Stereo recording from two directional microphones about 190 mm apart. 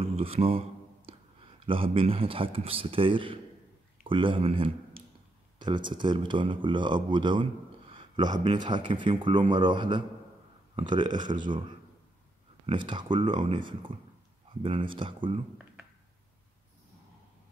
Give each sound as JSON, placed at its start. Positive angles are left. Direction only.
{"t": 0.0, "sound": "a sound", "side_deg": -30}
{"t": 1.7, "sound": "a man's voice", "side_deg": -30}
{"t": 12.6, "sound": "a man's voice", "side_deg": -25}